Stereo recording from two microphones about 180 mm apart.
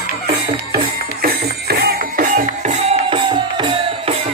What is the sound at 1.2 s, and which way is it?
Music, 60° right (ahead or behind).